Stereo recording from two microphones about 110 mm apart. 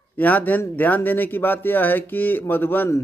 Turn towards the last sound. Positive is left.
turn(degrees=20)  # may be behind; listen again after turning